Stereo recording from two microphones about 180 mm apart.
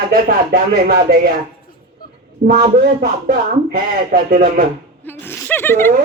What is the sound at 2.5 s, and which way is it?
Speech, 60° right (ahead or behind).